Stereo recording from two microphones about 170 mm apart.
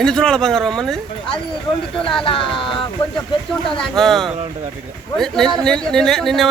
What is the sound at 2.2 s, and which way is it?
Speech, 30° left (ahead or behind).